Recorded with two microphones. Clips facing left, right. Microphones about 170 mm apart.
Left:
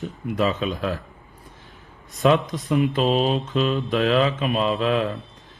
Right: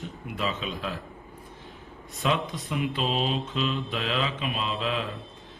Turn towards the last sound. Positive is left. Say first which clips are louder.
# left 9 dB
turn(degrees=50)  # may be behind; listen again after turning